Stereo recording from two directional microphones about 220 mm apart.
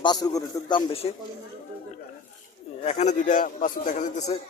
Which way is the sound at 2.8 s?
30° left (ahead or behind).